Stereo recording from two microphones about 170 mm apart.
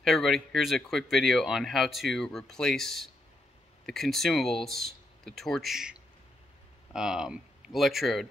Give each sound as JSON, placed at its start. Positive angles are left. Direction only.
{"t": 0.0, "sound": "speech", "side_deg": 0}